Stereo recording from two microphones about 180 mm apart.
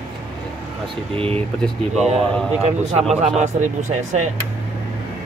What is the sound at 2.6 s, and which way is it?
Speech, 35° right (ahead or behind).